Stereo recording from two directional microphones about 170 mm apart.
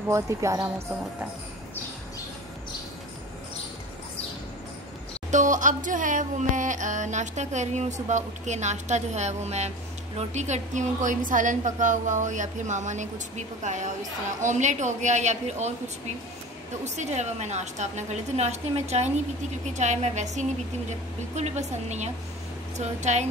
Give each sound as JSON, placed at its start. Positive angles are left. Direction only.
{"t": 0.1, "sound": "speech", "side_deg": -15}
{"t": 5.3, "sound": "music", "side_deg": -50}
{"t": 16.8, "sound": "music", "side_deg": -45}
{"t": 21.4, "sound": "speech", "side_deg": -40}
{"t": 22.8, "sound": "music", "side_deg": -45}